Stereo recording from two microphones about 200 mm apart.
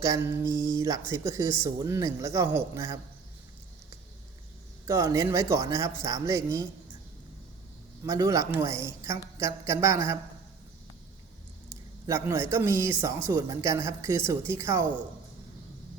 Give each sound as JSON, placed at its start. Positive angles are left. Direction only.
{"t": 0.0, "sound": "a woman's voice", "side_deg": -15}
{"t": 4.9, "sound": "a woman's voice", "side_deg": -15}
{"t": 8.0, "sound": "a woman's voice", "side_deg": -15}
{"t": 12.0, "sound": "a woman's voice", "side_deg": -15}